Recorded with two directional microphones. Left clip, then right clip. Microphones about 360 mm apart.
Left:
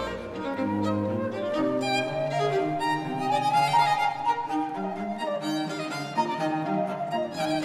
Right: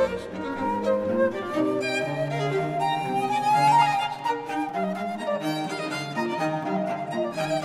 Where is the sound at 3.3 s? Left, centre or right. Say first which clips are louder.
Right 2 dB; centre.